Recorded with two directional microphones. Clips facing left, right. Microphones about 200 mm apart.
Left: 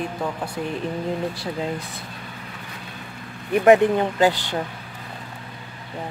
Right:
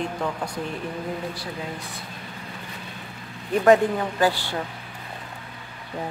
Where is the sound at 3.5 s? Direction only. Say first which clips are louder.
Left 3 dB; 15° left (ahead or behind).